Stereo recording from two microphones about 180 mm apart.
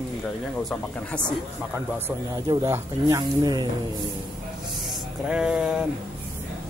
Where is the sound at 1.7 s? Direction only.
10° right (ahead or behind).